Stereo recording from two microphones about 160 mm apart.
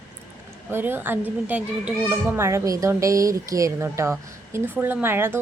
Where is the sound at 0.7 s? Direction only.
15° right (ahead or behind).